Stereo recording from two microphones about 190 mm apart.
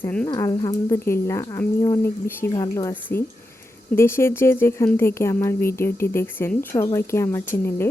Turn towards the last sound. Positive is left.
turn(degrees=10)  # may be behind; listen again after turning